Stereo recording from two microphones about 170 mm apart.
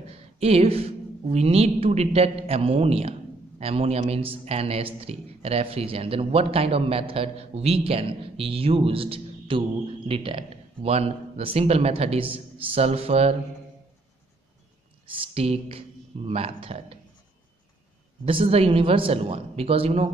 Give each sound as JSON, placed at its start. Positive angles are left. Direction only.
{"t": 0.4, "sound": "a man's voice", "side_deg": -35}
{"t": 15.0, "sound": "a man's voice", "side_deg": -35}
{"t": 18.2, "sound": "a man's voice", "side_deg": -35}